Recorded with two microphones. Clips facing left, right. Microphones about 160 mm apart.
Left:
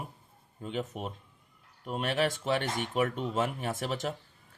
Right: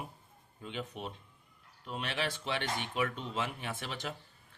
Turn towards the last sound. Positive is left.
turn(degrees=40)  # may be behind; listen again after turning